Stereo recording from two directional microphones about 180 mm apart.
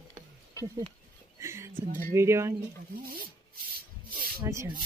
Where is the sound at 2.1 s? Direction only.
15° right (ahead or behind).